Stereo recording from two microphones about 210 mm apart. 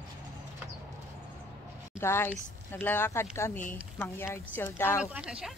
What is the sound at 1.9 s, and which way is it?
Speech, 10° left (ahead or behind).